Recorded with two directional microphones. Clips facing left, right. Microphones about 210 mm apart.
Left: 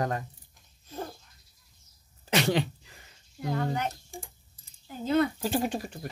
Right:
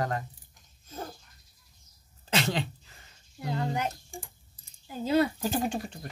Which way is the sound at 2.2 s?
15° left (ahead or behind).